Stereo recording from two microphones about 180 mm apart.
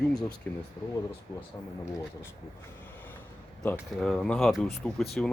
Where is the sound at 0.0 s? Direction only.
5° left (ahead or behind).